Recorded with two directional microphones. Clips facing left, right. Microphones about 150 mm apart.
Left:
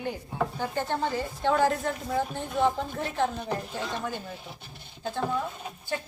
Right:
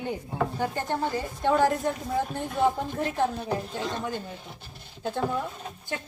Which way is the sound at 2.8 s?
10° right (ahead or behind).